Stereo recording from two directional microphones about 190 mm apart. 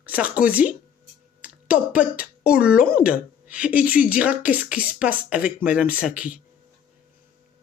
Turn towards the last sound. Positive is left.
turn(degrees=-5)  # may be behind; listen again after turning